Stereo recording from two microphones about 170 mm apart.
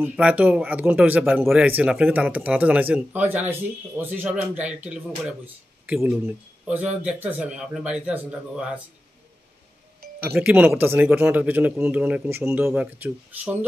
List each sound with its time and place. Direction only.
0.0 s speech: 10° right (ahead or behind)
10.2 s speech: 10° right (ahead or behind)